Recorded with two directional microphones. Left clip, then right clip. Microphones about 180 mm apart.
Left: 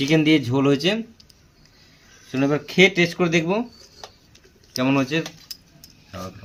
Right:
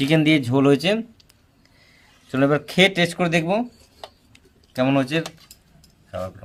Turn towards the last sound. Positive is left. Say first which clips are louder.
# right 1 dB
turn(degrees=-90)